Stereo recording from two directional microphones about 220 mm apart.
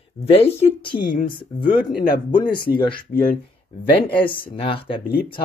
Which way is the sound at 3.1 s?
40° left (ahead or behind).